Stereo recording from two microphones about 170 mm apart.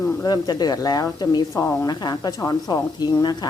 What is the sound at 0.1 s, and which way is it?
Speech, 20° left (ahead or behind).